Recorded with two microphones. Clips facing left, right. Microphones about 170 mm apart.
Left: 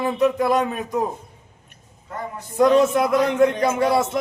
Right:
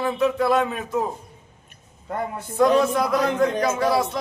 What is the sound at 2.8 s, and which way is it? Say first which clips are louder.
A man's voice: left 3 dB; 20° left (ahead or behind).